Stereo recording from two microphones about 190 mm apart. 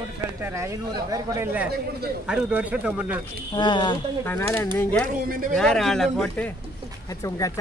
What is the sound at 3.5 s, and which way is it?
Speech, 25° left (ahead or behind).